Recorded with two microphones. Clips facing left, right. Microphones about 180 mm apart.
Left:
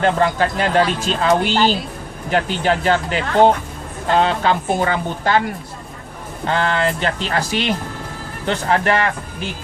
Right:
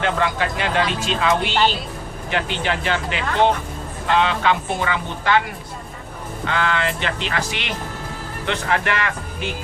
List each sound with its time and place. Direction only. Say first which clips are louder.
0.0 s speech: left 5 dB; 40° left (ahead or behind)
6.4 s speech: left 4 dB; 40° left (ahead or behind)